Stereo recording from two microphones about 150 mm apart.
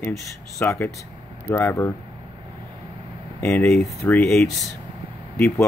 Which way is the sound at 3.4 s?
10° left (ahead or behind).